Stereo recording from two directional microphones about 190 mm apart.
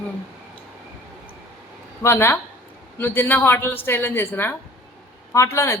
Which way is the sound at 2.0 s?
10° left (ahead or behind).